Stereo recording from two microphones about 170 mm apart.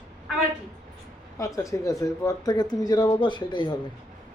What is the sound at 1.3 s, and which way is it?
Speech, 20° left (ahead or behind).